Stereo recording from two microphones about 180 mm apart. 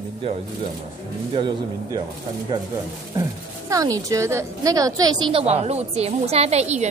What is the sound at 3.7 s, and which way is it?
A woman's voice, 20° right (ahead or behind).